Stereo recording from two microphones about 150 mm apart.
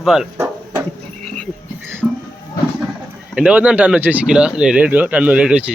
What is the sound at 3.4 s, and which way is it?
Speech, 10° right (ahead or behind).